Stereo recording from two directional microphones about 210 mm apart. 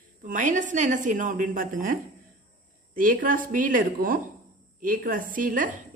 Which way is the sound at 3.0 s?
40° right (ahead or behind).